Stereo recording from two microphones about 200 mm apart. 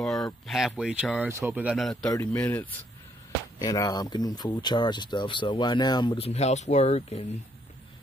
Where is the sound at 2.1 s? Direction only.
10° left (ahead or behind).